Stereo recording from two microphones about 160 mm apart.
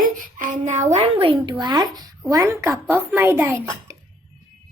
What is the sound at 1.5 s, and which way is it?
A child's voice, 25° right (ahead or behind).